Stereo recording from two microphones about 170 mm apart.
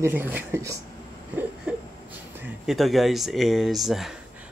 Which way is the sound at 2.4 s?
Centre (ahead or behind).